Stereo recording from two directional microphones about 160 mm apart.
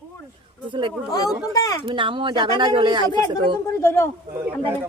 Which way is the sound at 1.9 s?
30° right (ahead or behind).